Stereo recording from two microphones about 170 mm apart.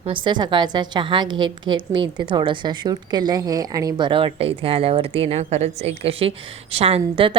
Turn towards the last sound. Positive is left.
turn(degrees=-30)  # may be behind; listen again after turning